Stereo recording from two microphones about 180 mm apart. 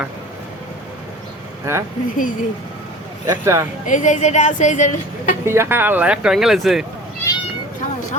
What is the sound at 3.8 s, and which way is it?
Speech, 45° left (ahead or behind).